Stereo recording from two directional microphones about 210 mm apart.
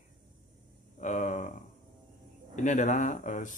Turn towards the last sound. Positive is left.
turn(degrees=35)  # may be behind; listen again after turning